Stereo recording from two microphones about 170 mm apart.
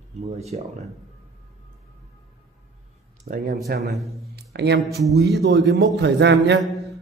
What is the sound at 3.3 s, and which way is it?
Speech, 50° right (ahead or behind).